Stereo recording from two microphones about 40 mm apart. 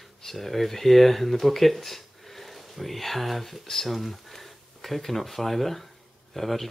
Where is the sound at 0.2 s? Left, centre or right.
Centre.